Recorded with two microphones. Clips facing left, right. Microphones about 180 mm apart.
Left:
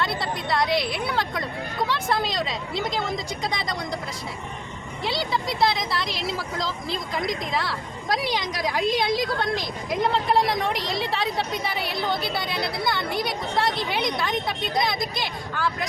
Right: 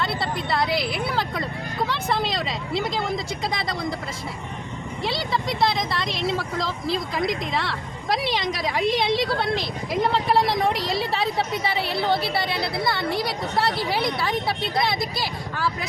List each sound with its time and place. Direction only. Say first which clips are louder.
0.0 s speech: right 1 dB; centre (ahead or behind)
5.0 s speech: even; centre (ahead or behind)
9.0 s a woman's voice: right 2 dB; 30° right (ahead or behind)
9.9 s speech: right 1 dB; centre (ahead or behind)
11.8 s a woman's voice: right 5 dB; 30° right (ahead or behind)
12.8 s speech: right 2 dB; centre (ahead or behind)